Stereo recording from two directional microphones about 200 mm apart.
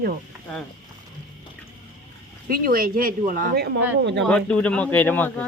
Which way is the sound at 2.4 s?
45° right (ahead or behind).